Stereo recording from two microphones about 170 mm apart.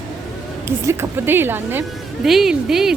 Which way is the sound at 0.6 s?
15° right (ahead or behind).